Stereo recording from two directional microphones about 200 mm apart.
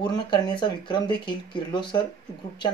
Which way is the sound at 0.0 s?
20° left (ahead or behind).